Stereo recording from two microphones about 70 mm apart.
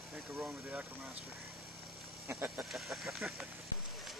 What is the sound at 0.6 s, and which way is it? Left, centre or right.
Speech, right.